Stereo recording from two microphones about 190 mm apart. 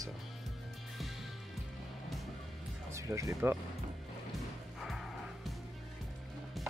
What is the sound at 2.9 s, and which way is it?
Speech, 15° right (ahead or behind).